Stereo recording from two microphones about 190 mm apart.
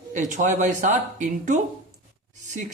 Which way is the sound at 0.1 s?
40° right (ahead or behind).